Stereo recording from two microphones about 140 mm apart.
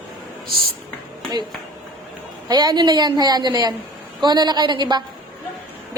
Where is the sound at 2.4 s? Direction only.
30° right (ahead or behind).